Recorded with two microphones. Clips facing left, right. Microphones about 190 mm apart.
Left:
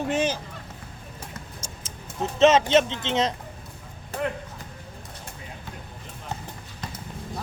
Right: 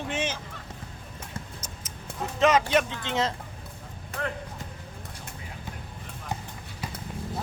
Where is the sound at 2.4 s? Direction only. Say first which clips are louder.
Left 4 dB; 25° left (ahead or behind).